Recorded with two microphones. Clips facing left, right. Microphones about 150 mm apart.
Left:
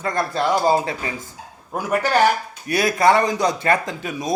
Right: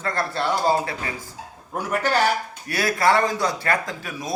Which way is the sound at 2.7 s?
20° left (ahead or behind).